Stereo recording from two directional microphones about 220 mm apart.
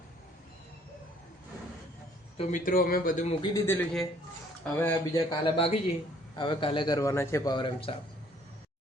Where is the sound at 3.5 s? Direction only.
10° left (ahead or behind).